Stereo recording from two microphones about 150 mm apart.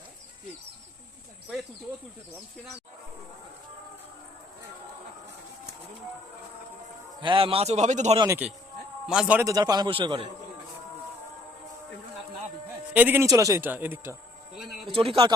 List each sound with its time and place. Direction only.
7.2 s a man's voice: 35° right (ahead or behind); by 8.2 s 50° right (ahead or behind)
8.4 s a man's voice: 5° right (ahead or behind)
9.4 s a man's voice: 25° right (ahead or behind)
12.9 s a man's voice: 10° right (ahead or behind)
14.5 s a sound: centre (ahead or behind)
14.8 s a man's voice: 40° right (ahead or behind)